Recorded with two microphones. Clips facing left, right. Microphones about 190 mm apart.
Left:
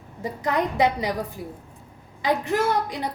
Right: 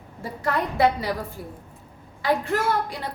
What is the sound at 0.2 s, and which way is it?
Speech, 15° left (ahead or behind).